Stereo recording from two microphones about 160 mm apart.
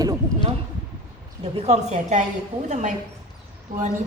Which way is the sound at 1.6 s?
45° right (ahead or behind).